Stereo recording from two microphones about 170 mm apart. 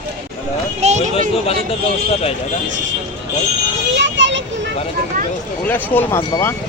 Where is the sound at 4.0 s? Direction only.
90° right.